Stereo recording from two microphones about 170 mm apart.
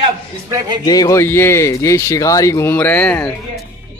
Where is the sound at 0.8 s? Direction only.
20° left (ahead or behind).